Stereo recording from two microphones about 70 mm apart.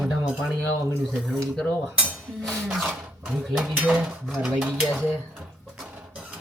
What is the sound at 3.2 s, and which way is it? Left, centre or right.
Dishes, right.